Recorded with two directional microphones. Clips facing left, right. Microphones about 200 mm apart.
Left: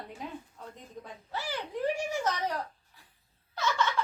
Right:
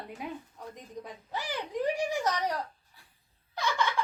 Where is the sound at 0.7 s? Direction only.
15° right (ahead or behind).